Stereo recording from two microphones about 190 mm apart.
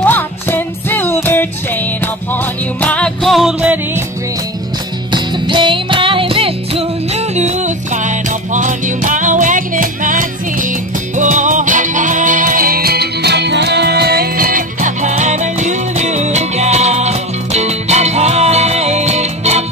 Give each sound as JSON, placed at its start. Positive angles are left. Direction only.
{"t": 0.0, "sound": "music", "side_deg": 10}
{"t": 5.1, "sound": "music", "side_deg": -25}